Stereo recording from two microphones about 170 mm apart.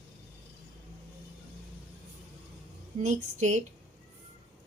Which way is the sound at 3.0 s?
45° right (ahead or behind).